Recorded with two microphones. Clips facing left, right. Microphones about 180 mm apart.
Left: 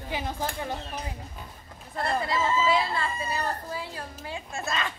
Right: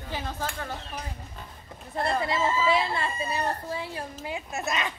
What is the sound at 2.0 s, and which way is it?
A woman's voice, 25° right (ahead or behind).